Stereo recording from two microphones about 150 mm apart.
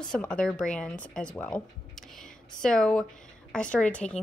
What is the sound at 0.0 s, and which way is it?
Speech, 5° left (ahead or behind).